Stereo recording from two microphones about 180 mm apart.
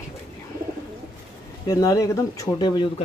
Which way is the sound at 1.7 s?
20° left (ahead or behind).